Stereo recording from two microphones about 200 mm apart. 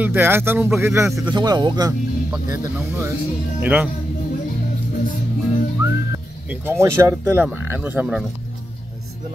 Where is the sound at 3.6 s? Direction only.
5° right (ahead or behind).